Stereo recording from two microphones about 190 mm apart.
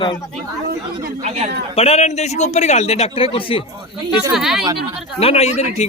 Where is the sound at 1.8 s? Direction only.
30° left (ahead or behind).